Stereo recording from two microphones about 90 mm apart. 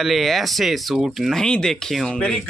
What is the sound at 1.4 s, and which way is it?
Speech, 10° left (ahead or behind).